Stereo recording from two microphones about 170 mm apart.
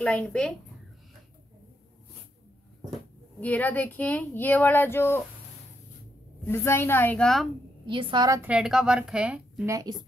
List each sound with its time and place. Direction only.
0.0 s a woman's voice: 5° left (ahead or behind)
3.3 s a woman's voice: 10° left (ahead or behind)
6.4 s a woman's voice: 15° left (ahead or behind)
7.8 s a woman's voice: 30° right (ahead or behind)
8.4 s a woman's voice: 5° right (ahead or behind)
9.7 s a woman's voice: 20° right (ahead or behind)